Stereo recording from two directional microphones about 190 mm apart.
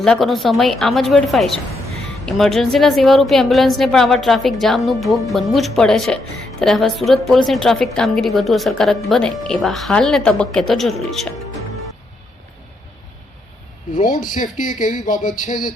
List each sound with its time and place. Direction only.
0.0 s a woman's voice: centre (ahead or behind)
13.9 s speech: 45° left (ahead or behind)